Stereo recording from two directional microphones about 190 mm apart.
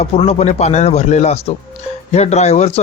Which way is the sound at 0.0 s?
35° left (ahead or behind).